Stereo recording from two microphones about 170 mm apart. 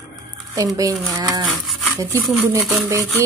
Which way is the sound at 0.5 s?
20° right (ahead or behind).